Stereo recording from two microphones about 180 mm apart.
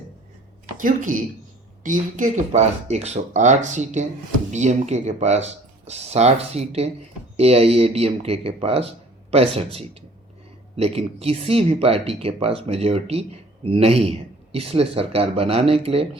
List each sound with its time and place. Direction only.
0.8 s speech: 50° right (ahead or behind); by 16.0 s 30° right (ahead or behind)